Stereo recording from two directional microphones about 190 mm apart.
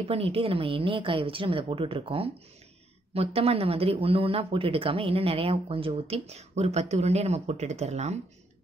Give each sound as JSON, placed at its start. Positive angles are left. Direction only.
{"t": 0.1, "sound": "a woman's voice", "side_deg": -30}